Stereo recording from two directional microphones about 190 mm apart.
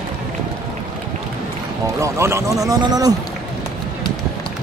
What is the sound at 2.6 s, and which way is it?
Speech, 20° right (ahead or behind).